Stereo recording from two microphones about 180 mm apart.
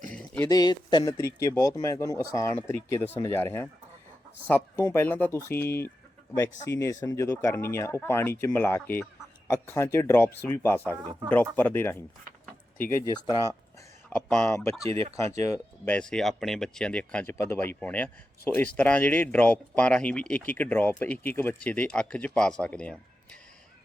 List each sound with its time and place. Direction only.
0.1 s a sound: 5° left (ahead or behind)
0.4 s a man's voice: 20° left (ahead or behind)
14.1 s a man's voice: 10° left (ahead or behind)
15.8 s a man's voice: 5° left (ahead or behind)